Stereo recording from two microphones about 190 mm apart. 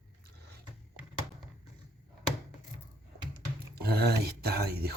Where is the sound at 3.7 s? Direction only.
55° right (ahead or behind).